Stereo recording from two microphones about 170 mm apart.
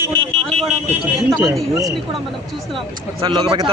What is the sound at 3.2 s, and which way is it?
Speech, 25° right (ahead or behind).